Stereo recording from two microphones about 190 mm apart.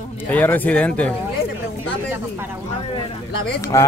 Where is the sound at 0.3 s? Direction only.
10° left (ahead or behind).